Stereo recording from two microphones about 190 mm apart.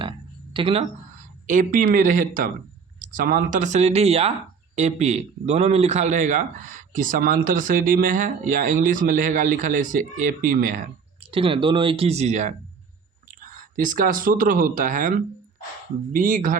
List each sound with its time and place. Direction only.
0.5 s speech: 30° right (ahead or behind)
1.5 s speech: 45° right (ahead or behind)
11.3 s speech: 30° right (ahead or behind); by 15.1 s 45° right (ahead or behind)
16.1 s speech: 45° right (ahead or behind)